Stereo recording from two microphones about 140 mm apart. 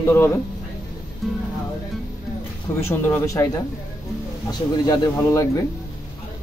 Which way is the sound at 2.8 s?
15° left (ahead or behind).